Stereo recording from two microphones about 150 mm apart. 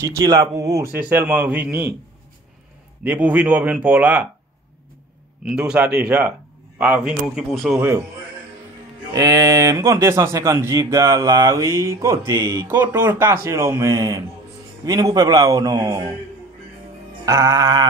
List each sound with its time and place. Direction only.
0.0 s speech: 25° right (ahead or behind)
0.9 s speech: 10° right (ahead or behind)
3.0 s speech: 10° right (ahead or behind)
5.4 s speech: 5° right (ahead or behind)
9.1 s speech: 25° right (ahead or behind)
17.2 s speech: 20° right (ahead or behind)